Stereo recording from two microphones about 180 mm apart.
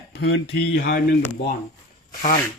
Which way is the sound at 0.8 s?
55° left (ahead or behind).